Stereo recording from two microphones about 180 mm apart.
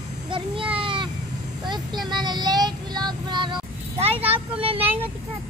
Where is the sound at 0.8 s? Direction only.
30° right (ahead or behind).